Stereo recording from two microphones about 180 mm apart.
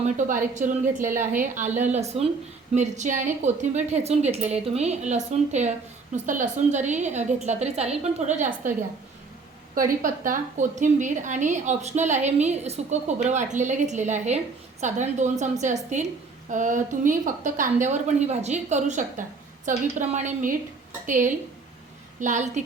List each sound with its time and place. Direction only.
0.3 s a woman's voice: 45° right (ahead or behind)
9.7 s a woman's voice: 50° right (ahead or behind)